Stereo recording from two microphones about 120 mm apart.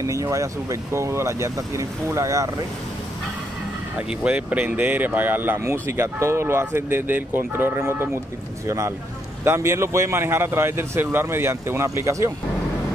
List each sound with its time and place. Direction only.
0.0 s a man's voice: 25° right (ahead or behind)
4.1 s a man's voice: 10° right (ahead or behind)